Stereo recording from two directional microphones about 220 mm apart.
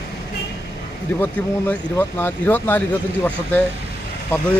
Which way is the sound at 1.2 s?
10° left (ahead or behind).